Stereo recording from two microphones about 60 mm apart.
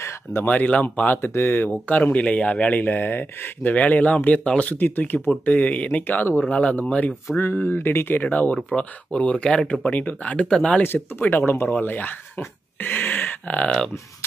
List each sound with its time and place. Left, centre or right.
0.5 s speech: left
1.2 s speech: left
1.7 s speech: left
4.7 s speech: left
7.5 s speech: left; by 10.8 s centre
10.8 s speech: left